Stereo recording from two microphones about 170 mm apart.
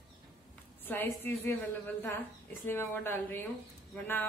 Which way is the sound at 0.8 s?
10° left (ahead or behind).